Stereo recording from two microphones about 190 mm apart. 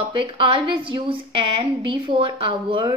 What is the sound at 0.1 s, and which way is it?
A woman's voice, 25° right (ahead or behind).